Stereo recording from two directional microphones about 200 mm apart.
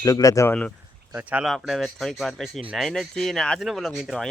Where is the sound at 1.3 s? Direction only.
5° right (ahead or behind).